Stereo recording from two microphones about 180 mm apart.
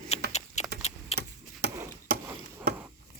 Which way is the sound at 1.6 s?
65° right (ahead or behind).